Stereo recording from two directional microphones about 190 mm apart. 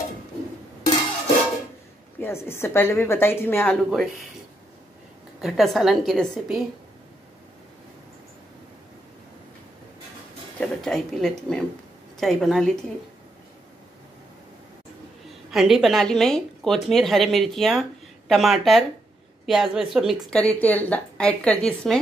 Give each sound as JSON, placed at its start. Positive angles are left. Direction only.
{"t": 2.1, "sound": "a woman's voice", "side_deg": 10}
{"t": 5.4, "sound": "a woman's voice", "side_deg": 0}
{"t": 10.6, "sound": "a woman's voice", "side_deg": 0}
{"t": 15.5, "sound": "a woman's voice", "side_deg": 0}